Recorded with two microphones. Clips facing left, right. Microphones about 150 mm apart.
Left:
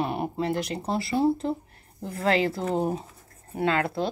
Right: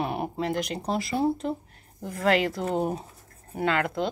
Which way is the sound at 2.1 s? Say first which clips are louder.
Even; 30° left (ahead or behind).